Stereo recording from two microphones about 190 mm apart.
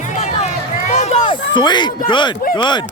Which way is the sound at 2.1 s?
25° left (ahead or behind).